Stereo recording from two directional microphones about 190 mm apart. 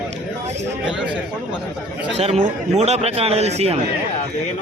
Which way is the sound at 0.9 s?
5° right (ahead or behind).